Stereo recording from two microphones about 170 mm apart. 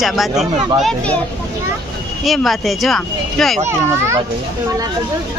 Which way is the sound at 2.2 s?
Centre (ahead or behind).